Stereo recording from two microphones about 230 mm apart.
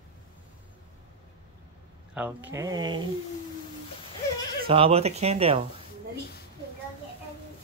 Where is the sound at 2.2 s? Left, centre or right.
Centre.